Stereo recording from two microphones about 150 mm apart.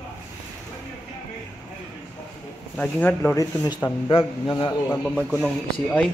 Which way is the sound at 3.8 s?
30° left (ahead or behind).